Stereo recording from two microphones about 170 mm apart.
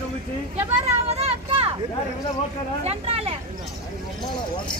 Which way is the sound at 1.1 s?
35° right (ahead or behind).